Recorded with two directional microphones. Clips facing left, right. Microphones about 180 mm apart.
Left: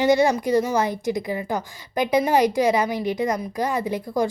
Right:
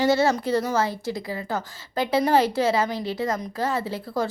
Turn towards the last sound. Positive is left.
turn(degrees=15)  # may be behind; listen again after turning